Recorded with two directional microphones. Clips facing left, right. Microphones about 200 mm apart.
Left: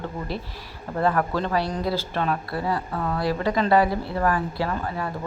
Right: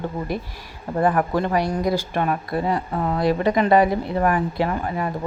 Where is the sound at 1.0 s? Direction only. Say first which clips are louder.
Right 3 dB; 15° right (ahead or behind).